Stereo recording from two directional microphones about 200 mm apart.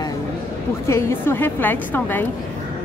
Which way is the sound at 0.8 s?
10° left (ahead or behind).